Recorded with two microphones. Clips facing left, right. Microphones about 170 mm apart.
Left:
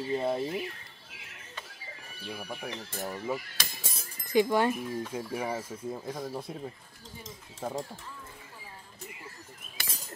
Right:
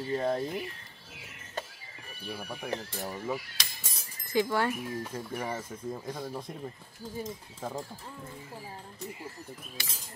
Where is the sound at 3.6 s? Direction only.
50° left (ahead or behind).